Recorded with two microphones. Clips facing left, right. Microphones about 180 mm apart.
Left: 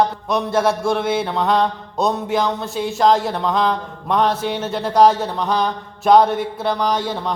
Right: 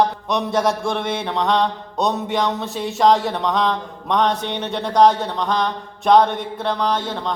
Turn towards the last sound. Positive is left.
turn(degrees=10)  # may be behind; listen again after turning